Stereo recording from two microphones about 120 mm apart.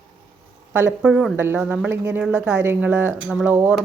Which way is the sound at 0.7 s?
15° right (ahead or behind).